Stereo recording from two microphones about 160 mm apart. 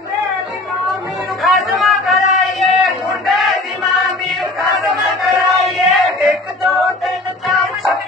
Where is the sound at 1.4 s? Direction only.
Centre (ahead or behind).